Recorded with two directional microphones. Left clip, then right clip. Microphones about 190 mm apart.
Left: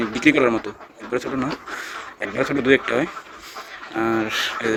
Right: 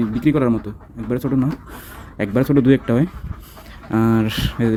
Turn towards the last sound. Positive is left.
turn(degrees=-15)  # may be behind; listen again after turning